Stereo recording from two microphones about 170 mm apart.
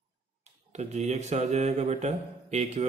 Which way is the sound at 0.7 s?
40° right (ahead or behind).